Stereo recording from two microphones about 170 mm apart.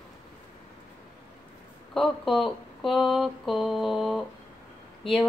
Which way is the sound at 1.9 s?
Centre (ahead or behind).